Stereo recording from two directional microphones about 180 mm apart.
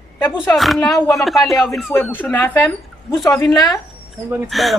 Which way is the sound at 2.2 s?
10° left (ahead or behind).